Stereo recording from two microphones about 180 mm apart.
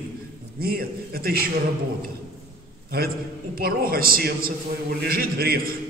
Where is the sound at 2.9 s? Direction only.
55° right (ahead or behind).